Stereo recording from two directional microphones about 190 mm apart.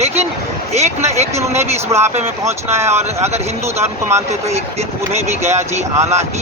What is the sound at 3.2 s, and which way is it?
Speech, 35° right (ahead or behind).